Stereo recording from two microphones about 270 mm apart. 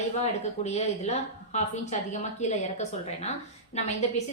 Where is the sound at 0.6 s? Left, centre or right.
Left.